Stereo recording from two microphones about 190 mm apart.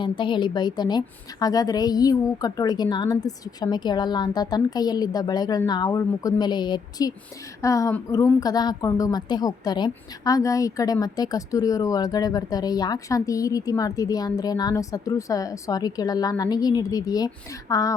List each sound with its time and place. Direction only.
0.0 s a woman's voice: 25° left (ahead or behind)